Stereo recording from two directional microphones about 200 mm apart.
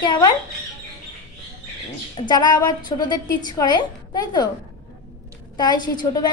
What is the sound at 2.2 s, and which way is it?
A woman's voice, 20° left (ahead or behind).